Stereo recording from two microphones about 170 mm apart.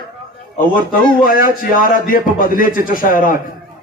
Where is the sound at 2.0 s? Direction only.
55° left (ahead or behind).